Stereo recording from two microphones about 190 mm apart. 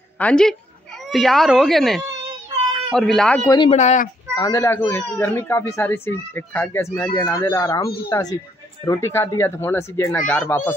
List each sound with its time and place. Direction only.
0.2 s speech: 5° left (ahead or behind)
3.4 s speech: 25° left (ahead or behind)
3.7 s speech: 40° left (ahead or behind)
4.4 s speech: 15° left (ahead or behind)